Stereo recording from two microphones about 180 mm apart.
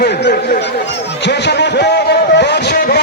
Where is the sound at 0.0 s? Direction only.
70° left (ahead or behind).